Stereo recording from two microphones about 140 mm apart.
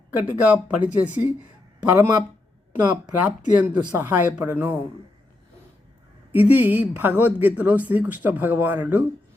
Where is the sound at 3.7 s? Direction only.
30° right (ahead or behind).